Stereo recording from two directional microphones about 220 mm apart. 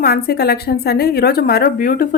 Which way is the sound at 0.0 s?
45° left (ahead or behind).